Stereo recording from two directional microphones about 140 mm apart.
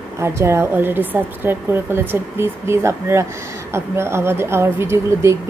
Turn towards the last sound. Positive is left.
turn(degrees=-20)  # may be behind; listen again after turning